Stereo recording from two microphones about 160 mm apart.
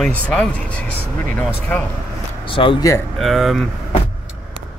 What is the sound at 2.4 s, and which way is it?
Speech, 35° left (ahead or behind).